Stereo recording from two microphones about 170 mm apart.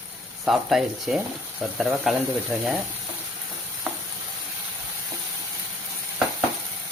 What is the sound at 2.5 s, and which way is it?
Frying, 5° right (ahead or behind).